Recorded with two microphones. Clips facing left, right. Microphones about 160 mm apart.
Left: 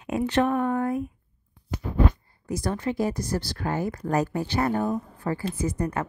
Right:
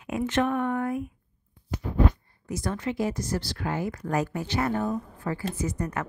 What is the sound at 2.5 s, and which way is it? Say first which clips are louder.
A woman's voice: left 2 dB; 35° left (ahead or behind).